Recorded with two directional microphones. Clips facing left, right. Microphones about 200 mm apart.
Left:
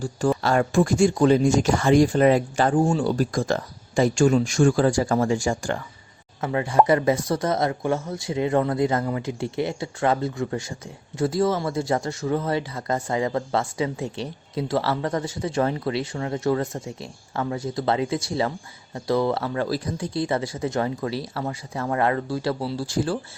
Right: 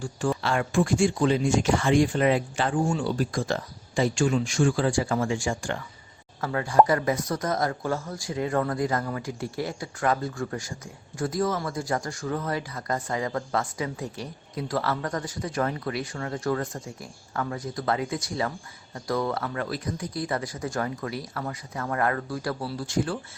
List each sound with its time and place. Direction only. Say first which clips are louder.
0.0 s speech: left 5 dB; 40° left (ahead or behind)
6.4 s speech: left 1 dB; 20° left (ahead or behind)